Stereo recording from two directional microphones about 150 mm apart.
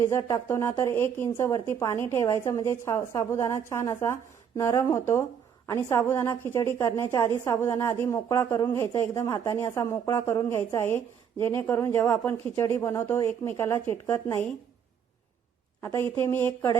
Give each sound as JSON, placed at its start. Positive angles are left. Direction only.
{"t": 0.0, "sound": "a woman's voice", "side_deg": 20}
{"t": 15.8, "sound": "a woman's voice", "side_deg": 15}